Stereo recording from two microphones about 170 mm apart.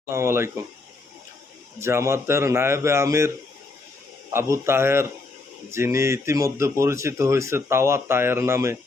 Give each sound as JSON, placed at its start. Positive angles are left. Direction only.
{"t": 0.0, "sound": "speech", "side_deg": -15}
{"t": 1.8, "sound": "speech", "side_deg": -15}